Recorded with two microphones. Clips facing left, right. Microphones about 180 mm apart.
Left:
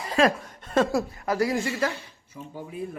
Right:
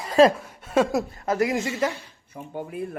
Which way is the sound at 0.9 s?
20° right (ahead or behind).